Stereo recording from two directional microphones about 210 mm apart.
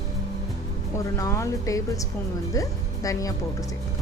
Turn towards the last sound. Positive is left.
turn(degrees=15)  # may be behind; listen again after turning